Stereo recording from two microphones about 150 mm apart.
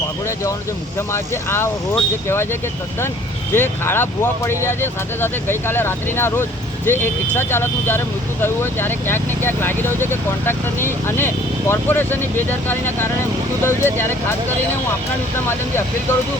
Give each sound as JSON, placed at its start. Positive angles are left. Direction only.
{"t": 0.9, "sound": "speech", "side_deg": 15}